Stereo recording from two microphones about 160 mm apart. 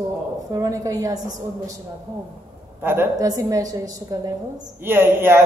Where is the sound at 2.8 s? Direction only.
15° right (ahead or behind).